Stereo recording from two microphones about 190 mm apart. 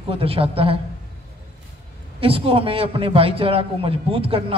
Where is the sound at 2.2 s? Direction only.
30° right (ahead or behind).